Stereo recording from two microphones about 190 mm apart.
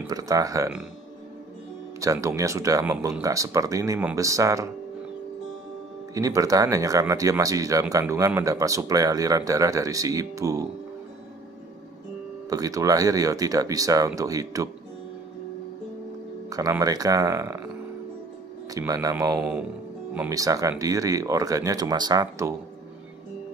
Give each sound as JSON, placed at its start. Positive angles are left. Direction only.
{"t": 0.0, "sound": "speech", "side_deg": -20}
{"t": 2.0, "sound": "speech", "side_deg": -15}
{"t": 6.1, "sound": "speech", "side_deg": -15}
{"t": 12.4, "sound": "speech", "side_deg": -20}
{"t": 16.4, "sound": "speech", "side_deg": -20}
{"t": 18.7, "sound": "speech", "side_deg": -20}